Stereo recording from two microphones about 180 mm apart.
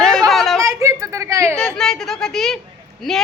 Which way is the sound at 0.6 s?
15° right (ahead or behind).